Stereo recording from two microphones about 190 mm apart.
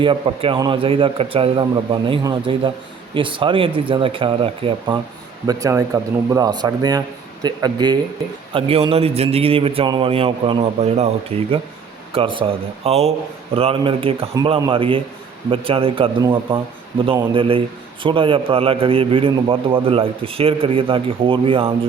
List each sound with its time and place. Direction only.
0.0 s a man's voice: 25° right (ahead or behind)
5.5 s a man's voice: 15° right (ahead or behind)